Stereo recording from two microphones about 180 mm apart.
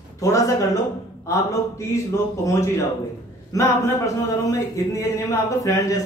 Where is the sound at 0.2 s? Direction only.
15° left (ahead or behind).